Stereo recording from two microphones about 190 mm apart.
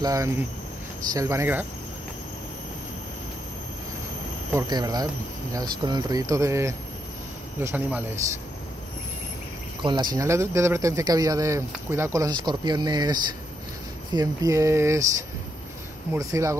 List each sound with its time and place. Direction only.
0.0 s a man's voice: 20° right (ahead or behind)
4.5 s a man's voice: 20° right (ahead or behind)
9.8 s a man's voice: 20° right (ahead or behind)